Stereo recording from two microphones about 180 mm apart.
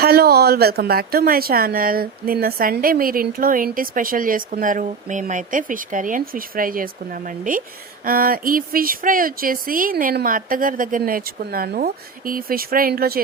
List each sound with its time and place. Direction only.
0.0 s speech: 60° right (ahead or behind)